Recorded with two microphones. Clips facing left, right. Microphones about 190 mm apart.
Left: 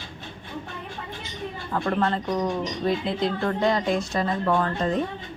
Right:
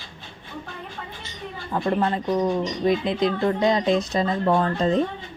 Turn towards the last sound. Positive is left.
turn(degrees=-20)  # may be behind; listen again after turning